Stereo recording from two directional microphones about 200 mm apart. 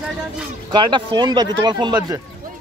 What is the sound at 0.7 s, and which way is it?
Speech, 20° right (ahead or behind).